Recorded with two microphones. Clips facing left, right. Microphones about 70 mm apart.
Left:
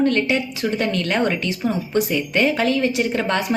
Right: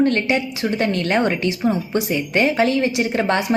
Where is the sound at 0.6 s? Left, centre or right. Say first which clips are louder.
Right 1 dB; right.